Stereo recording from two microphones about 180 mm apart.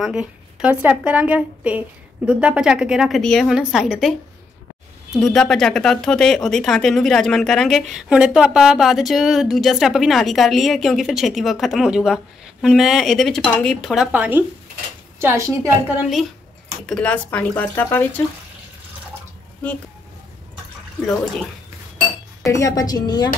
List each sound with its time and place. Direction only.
0.0 s speech: 5° right (ahead or behind)
5.1 s speech: centre (ahead or behind)
14.1 s a woman's voice: 10° right (ahead or behind)
16.8 s speech: 5° left (ahead or behind)
22.4 s a woman's voice: 15° left (ahead or behind)